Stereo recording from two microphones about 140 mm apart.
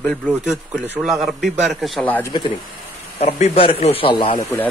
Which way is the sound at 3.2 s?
45° left (ahead or behind).